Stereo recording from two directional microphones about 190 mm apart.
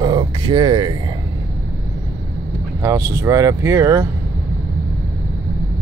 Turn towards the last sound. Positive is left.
turn(degrees=-15)  # may be behind; listen again after turning